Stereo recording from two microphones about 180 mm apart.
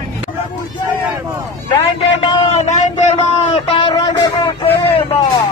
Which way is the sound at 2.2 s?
40° left (ahead or behind).